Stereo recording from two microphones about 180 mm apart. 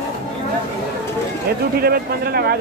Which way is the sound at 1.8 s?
60° right (ahead or behind).